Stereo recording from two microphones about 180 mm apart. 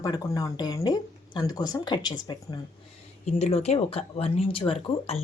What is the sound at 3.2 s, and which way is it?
Speech, 40° left (ahead or behind).